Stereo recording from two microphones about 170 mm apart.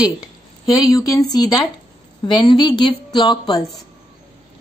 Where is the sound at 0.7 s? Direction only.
20° left (ahead or behind).